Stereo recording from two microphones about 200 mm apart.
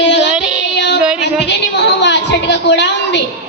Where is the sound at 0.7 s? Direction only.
55° left (ahead or behind).